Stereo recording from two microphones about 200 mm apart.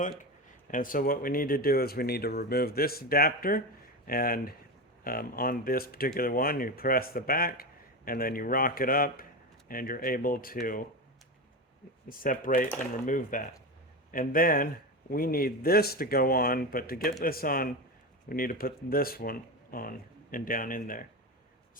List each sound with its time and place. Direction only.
0.7 s a man's voice: 45° left (ahead or behind)
12.0 s a man's voice: 45° left (ahead or behind)